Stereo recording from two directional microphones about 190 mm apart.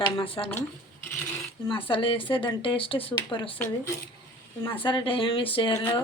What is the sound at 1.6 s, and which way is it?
Speech, 30° left (ahead or behind).